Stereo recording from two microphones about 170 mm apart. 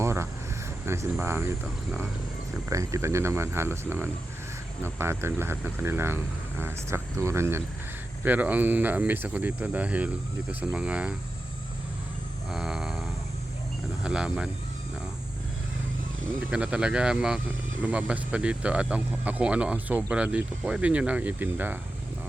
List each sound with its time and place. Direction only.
0.0 s a sound: 15° right (ahead or behind)
1.2 s speech: 15° right (ahead or behind)
1.6 s speech: 5° right (ahead or behind)
2.6 s speech: 20° right (ahead or behind)
12.5 s cattle: 5° right (ahead or behind)
14.0 s speech: 5° right (ahead or behind)
16.5 s speech: 5° right (ahead or behind)